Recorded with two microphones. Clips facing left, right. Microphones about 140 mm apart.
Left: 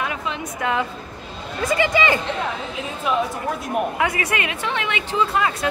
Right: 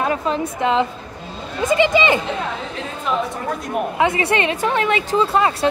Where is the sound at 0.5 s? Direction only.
20° right (ahead or behind).